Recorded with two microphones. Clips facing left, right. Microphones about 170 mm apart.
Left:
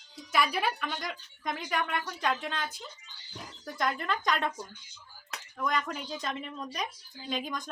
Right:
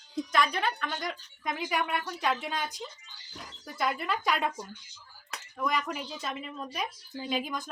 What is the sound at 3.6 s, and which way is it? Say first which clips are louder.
A woman's voice: even; 5° right (ahead or behind).